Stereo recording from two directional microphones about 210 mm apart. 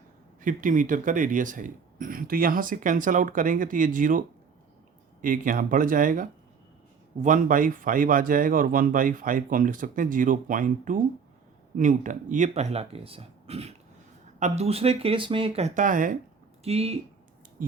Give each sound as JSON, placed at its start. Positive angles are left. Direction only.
{"t": 0.4, "sound": "speech", "side_deg": -40}
{"t": 5.2, "sound": "speech", "side_deg": -40}
{"t": 16.6, "sound": "speech", "side_deg": -30}